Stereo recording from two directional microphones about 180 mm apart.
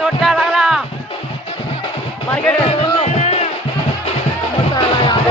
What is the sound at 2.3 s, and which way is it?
Music, 10° left (ahead or behind).